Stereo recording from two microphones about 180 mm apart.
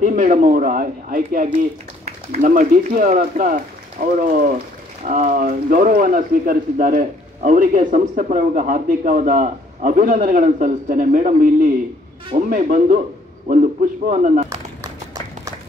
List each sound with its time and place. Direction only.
0.0 s speech: 45° right (ahead or behind)
14.0 s speech: 45° right (ahead or behind)